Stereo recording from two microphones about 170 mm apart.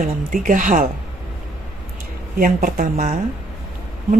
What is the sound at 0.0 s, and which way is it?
Speech, 55° right (ahead or behind).